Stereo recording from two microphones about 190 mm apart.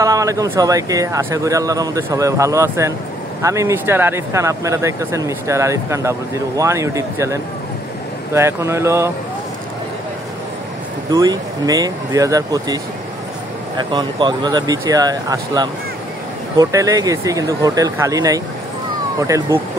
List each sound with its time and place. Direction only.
0.0 s speech: 15° right (ahead or behind)
11.1 s speech: 20° right (ahead or behind)